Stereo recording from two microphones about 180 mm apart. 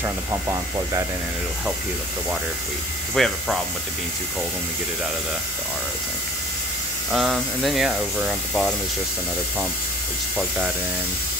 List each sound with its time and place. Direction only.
0.0 s speech: 15° right (ahead or behind)
3.2 s speech: centre (ahead or behind)
7.1 s speech: centre (ahead or behind)